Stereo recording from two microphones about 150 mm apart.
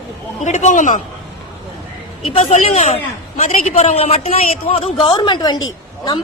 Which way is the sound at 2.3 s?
50° left (ahead or behind).